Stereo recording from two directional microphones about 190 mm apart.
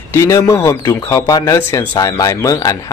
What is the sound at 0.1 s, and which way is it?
Speech, 15° left (ahead or behind).